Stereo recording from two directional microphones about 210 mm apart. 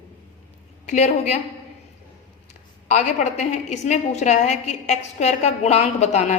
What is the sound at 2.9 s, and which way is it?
A woman's voice, 35° left (ahead or behind).